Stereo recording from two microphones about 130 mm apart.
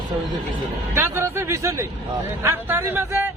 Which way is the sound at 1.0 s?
20° right (ahead or behind).